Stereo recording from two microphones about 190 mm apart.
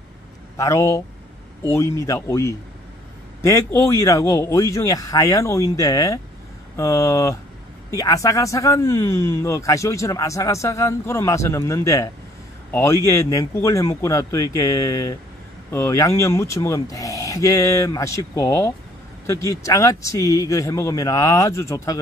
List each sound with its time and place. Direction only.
0.6 s speech: 15° left (ahead or behind)